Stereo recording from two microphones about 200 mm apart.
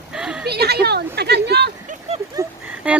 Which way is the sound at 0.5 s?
55° right (ahead or behind).